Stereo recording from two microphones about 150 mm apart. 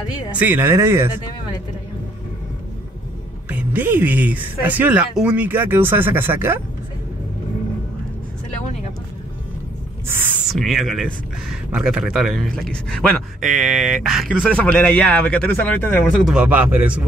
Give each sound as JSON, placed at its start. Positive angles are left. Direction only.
{"t": 0.3, "sound": "speech", "side_deg": -10}
{"t": 3.4, "sound": "speech", "side_deg": -10}
{"t": 10.0, "sound": "speech", "side_deg": -15}
{"t": 10.5, "sound": "a man's voice", "side_deg": 0}
{"t": 16.3, "sound": "speech", "side_deg": -10}